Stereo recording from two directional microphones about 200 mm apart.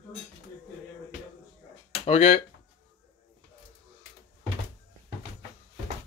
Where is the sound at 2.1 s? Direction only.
35° left (ahead or behind).